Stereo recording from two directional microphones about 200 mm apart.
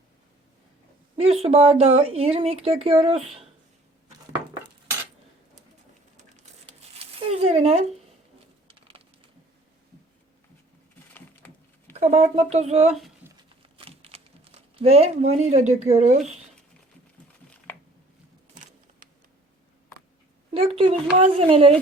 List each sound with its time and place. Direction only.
1.3 s speech: 30° right (ahead or behind)
6.1 s a sound: 35° right (ahead or behind)
11.1 s typing: 10° left (ahead or behind)
11.9 s speech: 35° right (ahead or behind)
13.2 s a sound: 10° right (ahead or behind)
13.6 s typing: 30° right (ahead or behind)
14.8 s speech: 30° right (ahead or behind)
20.5 s speech: 30° right (ahead or behind)